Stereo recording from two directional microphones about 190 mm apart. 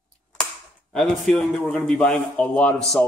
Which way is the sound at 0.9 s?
5° left (ahead or behind).